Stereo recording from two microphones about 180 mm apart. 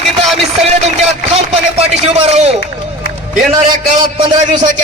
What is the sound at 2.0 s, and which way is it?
Speech, 35° right (ahead or behind).